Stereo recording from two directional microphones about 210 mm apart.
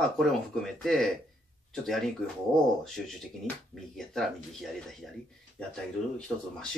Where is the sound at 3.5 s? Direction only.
10° left (ahead or behind).